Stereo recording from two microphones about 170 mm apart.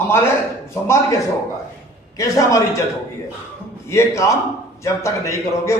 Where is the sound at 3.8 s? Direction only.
15° left (ahead or behind).